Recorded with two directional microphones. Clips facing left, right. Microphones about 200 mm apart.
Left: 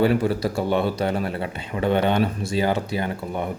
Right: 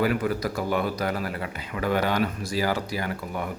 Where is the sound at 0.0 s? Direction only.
30° left (ahead or behind).